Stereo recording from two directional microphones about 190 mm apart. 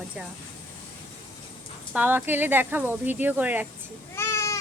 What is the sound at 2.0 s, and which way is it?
Speech, 10° right (ahead or behind).